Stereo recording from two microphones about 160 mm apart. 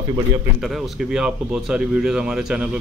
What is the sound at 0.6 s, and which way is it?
Speech, centre (ahead or behind).